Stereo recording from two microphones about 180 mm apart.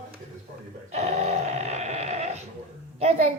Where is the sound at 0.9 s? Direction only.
40° right (ahead or behind).